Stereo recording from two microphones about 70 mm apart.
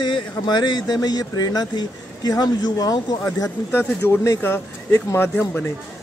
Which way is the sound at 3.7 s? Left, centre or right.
Left.